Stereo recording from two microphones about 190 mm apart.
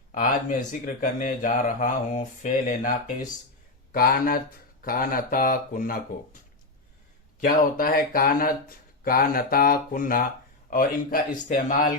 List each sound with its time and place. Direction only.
0.7 s speech: 45° left (ahead or behind)
7.4 s speech: 50° left (ahead or behind)